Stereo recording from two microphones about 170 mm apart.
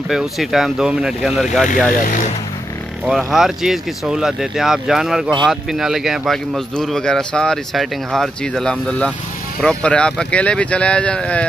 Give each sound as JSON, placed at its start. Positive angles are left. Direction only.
{"t": 0.1, "sound": "speech", "side_deg": 0}
{"t": 1.9, "sound": "speech", "side_deg": 50}
{"t": 3.1, "sound": "speech", "side_deg": 0}